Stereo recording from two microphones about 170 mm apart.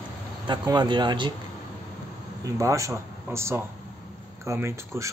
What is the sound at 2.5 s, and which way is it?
Speech, 20° right (ahead or behind).